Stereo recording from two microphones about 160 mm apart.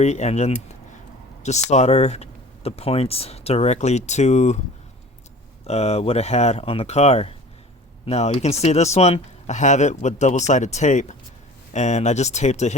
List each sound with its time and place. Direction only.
0.0 s speech: 45° left (ahead or behind)
5.6 s speech: 40° left (ahead or behind)